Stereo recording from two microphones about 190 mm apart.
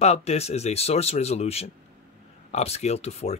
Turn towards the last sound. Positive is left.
turn(degrees=35)  # may be behind; listen again after turning